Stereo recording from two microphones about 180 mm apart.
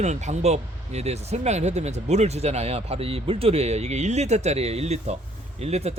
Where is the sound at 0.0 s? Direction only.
40° right (ahead or behind).